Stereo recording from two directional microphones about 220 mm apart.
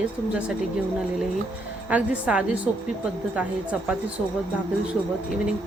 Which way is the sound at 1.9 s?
5° right (ahead or behind).